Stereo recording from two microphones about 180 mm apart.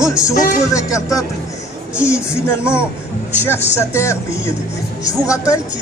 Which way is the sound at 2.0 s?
5° right (ahead or behind).